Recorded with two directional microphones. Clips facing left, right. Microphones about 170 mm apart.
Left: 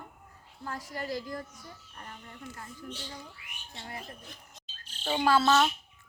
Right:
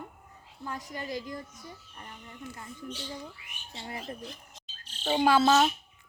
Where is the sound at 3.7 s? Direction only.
20° right (ahead or behind).